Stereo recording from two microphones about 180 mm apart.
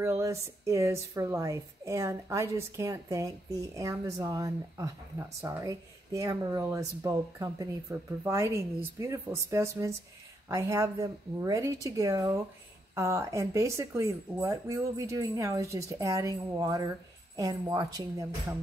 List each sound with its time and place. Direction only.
0.0 s speech: 15° right (ahead or behind)